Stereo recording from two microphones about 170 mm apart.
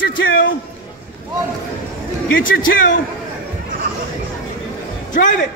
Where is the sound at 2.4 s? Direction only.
55° left (ahead or behind).